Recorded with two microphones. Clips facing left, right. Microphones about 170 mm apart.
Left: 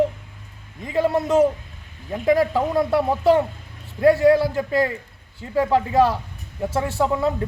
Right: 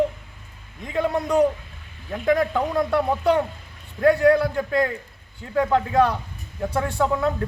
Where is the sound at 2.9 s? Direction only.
5° left (ahead or behind).